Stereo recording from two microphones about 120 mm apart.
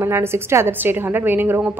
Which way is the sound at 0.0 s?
20° right (ahead or behind).